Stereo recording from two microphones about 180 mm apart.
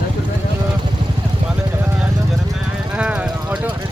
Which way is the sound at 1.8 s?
5° right (ahead or behind).